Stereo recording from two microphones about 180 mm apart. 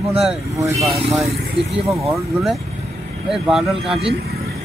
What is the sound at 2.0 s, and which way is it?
Speech, centre (ahead or behind).